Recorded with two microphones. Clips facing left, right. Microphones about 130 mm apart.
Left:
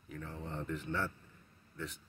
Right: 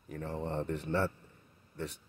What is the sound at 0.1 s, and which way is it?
Speech, 70° right (ahead or behind).